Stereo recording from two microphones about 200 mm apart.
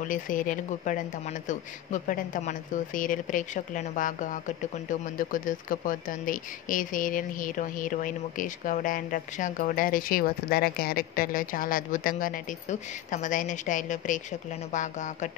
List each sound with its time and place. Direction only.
0.0 s speech: 40° left (ahead or behind)